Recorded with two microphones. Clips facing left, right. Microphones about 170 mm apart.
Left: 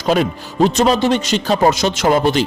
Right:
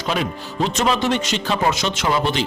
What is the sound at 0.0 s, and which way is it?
Speech, 40° left (ahead or behind).